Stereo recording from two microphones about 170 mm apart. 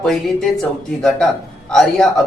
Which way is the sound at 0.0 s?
Centre (ahead or behind).